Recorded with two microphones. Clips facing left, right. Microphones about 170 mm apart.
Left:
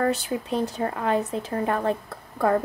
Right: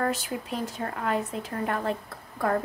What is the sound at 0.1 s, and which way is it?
Speech, 30° left (ahead or behind).